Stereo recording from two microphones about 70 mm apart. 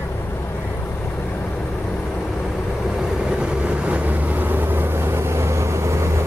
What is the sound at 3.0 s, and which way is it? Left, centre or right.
Vehicle, centre.